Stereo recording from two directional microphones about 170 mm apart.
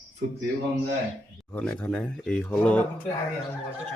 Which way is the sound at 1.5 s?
5° left (ahead or behind).